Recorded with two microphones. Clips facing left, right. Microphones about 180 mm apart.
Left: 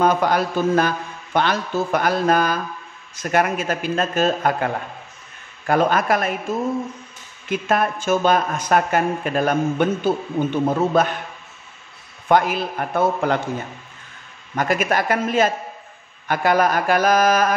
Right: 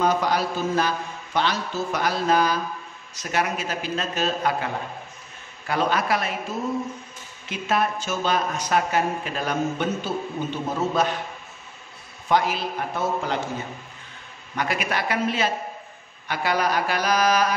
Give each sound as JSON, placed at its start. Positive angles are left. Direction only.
{"t": 0.0, "sound": "speech", "side_deg": 55}
{"t": 5.7, "sound": "speech", "side_deg": 50}
{"t": 7.4, "sound": "speech", "side_deg": 50}
{"t": 12.3, "sound": "a man's voice", "side_deg": 55}
{"t": 14.5, "sound": "speech", "side_deg": 45}